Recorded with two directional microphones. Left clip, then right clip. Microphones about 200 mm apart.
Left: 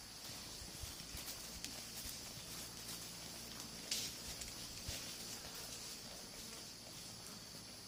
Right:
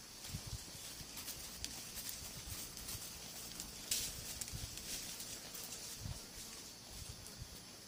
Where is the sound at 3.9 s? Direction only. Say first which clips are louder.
Right 1 dB; 55° right (ahead or behind).